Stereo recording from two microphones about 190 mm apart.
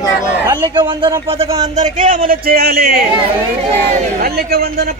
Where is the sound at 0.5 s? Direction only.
25° right (ahead or behind).